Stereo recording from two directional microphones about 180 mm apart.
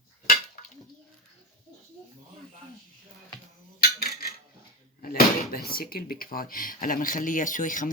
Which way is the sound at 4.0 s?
60° left (ahead or behind).